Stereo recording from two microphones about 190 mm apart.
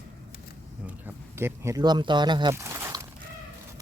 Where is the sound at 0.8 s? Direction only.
10° right (ahead or behind).